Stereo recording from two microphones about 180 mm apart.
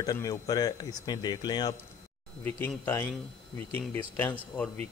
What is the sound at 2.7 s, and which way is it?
A man's voice, 10° left (ahead or behind).